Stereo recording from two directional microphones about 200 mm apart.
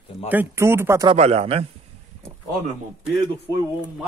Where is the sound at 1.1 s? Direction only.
30° right (ahead or behind).